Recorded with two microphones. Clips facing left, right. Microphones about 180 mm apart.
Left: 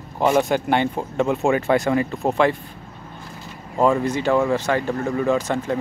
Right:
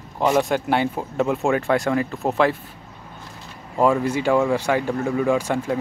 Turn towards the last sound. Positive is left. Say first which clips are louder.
# even
turn(degrees=-10)  # may be behind; listen again after turning